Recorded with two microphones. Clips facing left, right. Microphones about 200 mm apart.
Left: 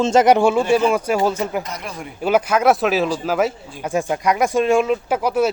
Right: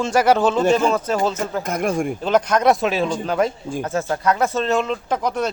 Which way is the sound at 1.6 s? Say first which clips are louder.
Right 10 dB; 50° right (ahead or behind).